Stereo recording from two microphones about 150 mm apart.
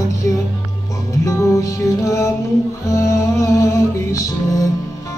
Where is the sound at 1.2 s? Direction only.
20° left (ahead or behind).